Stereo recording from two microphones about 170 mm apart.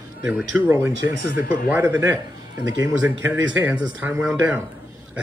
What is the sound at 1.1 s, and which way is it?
Speech, 60° left (ahead or behind).